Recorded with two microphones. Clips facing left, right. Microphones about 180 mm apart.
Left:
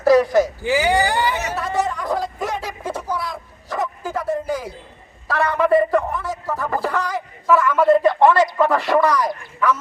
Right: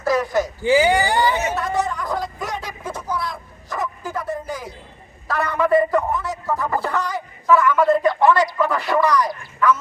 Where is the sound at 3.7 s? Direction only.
25° left (ahead or behind).